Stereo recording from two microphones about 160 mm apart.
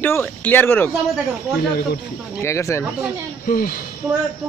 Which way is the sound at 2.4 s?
20° left (ahead or behind).